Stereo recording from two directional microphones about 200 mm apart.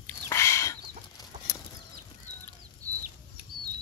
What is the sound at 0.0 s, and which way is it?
Chicken, 15° left (ahead or behind).